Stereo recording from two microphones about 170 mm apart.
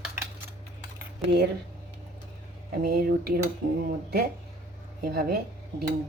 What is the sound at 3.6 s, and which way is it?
Speech, 50° right (ahead or behind).